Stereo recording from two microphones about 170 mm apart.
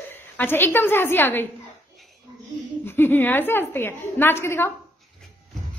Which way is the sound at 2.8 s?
10° left (ahead or behind).